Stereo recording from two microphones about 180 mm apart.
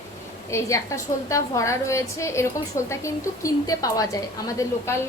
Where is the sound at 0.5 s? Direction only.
15° left (ahead or behind).